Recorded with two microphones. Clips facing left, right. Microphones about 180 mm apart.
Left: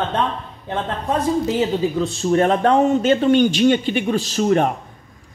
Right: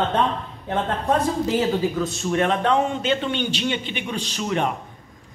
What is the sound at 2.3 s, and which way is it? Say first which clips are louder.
A man's voice: left 5 dB; 40° left (ahead or behind).